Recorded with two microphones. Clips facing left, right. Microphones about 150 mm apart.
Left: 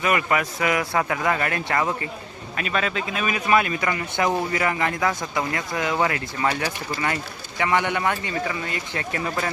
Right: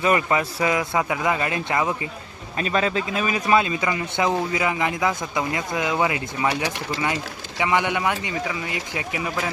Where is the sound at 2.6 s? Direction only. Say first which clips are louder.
Right 3 dB; 30° right (ahead or behind).